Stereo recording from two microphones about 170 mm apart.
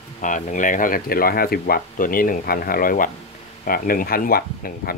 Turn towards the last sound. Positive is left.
turn(degrees=60)  # may be behind; listen again after turning